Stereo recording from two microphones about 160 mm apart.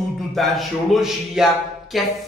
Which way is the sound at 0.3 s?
Centre (ahead or behind).